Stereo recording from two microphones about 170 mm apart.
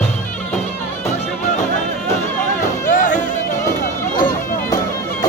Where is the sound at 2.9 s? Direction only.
50° left (ahead or behind).